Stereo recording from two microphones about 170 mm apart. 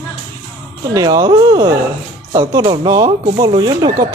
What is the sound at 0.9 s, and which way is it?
Speech, 20° right (ahead or behind).